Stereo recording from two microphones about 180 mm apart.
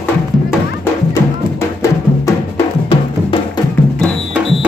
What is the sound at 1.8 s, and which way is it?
Music, 15° left (ahead or behind).